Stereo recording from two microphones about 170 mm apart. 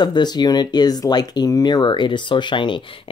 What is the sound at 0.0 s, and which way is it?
Speech, 25° left (ahead or behind).